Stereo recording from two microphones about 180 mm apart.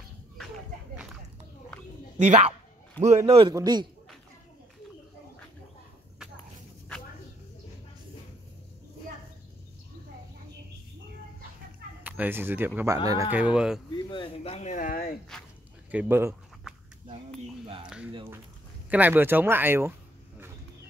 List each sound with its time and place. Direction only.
2.1 s a man's voice: 40° right (ahead or behind); by 3.8 s 20° right (ahead or behind)
12.0 s speech: 10° right (ahead or behind)
13.3 s speech: 5° right (ahead or behind)
14.0 s speech: 30° left (ahead or behind); by 15.1 s 50° left (ahead or behind)
15.9 s speech: 10° right (ahead or behind)
17.8 s a sound: 5° right (ahead or behind)
18.9 s speech: 10° right (ahead or behind)